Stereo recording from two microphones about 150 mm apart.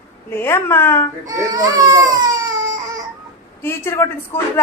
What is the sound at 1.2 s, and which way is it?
A child's voice, 25° right (ahead or behind).